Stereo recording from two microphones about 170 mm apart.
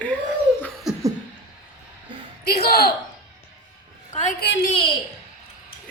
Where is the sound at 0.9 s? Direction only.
5° right (ahead or behind).